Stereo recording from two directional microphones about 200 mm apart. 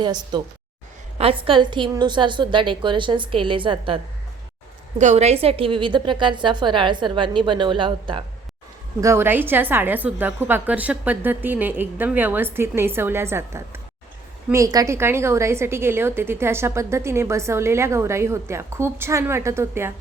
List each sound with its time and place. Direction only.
0.0 s a woman's voice: 20° right (ahead or behind)
9.0 s a woman's voice: 15° right (ahead or behind)